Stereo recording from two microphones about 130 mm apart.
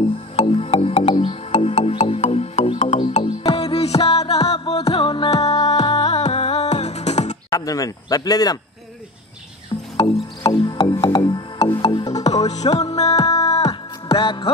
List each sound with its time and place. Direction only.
0.4 s music: 50° left (ahead or behind); by 6.0 s 30° left (ahead or behind)
6.0 s music: 60° left (ahead or behind)
7.5 s speech: 25° left (ahead or behind)
10.0 s music: 35° left (ahead or behind)
12.4 s music: 60° left (ahead or behind)
13.2 s music: 30° left (ahead or behind)
13.7 s music: 45° left (ahead or behind)